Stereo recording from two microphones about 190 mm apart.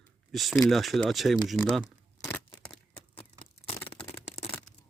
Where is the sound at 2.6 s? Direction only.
5° left (ahead or behind).